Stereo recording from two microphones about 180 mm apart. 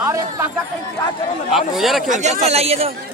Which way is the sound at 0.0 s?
15° right (ahead or behind).